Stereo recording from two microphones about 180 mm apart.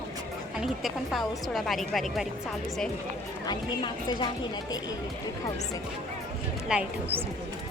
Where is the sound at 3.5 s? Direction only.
25° left (ahead or behind).